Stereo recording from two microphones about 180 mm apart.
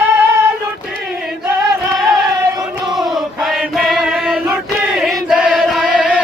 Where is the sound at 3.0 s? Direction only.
Centre (ahead or behind).